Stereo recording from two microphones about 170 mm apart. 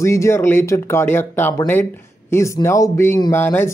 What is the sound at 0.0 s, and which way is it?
Speech, 15° left (ahead or behind).